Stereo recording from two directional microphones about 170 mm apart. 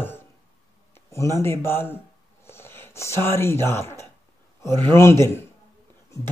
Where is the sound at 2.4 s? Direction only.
15° left (ahead or behind).